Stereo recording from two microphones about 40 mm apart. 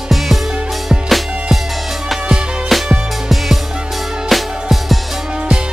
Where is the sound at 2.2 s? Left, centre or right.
Right.